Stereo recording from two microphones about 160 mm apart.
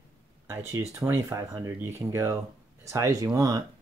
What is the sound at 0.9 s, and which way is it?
Speech, 15° right (ahead or behind).